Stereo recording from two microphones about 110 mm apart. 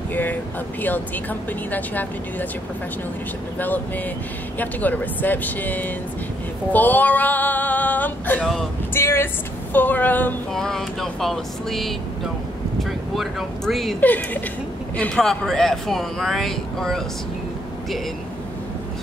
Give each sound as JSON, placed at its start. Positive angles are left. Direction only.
{"t": 0.1, "sound": "speech", "side_deg": 15}
{"t": 3.5, "sound": "speech", "side_deg": 15}
{"t": 6.7, "sound": "female singing", "side_deg": 15}
{"t": 8.9, "sound": "speech", "side_deg": 20}
{"t": 10.5, "sound": "speech", "side_deg": 5}
{"t": 14.0, "sound": "speech", "side_deg": 15}